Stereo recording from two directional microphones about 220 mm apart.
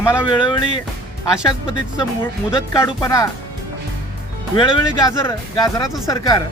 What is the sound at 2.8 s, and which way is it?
Speech, 15° left (ahead or behind).